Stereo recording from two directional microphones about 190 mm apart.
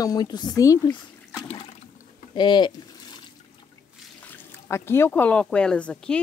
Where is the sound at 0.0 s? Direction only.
20° left (ahead or behind).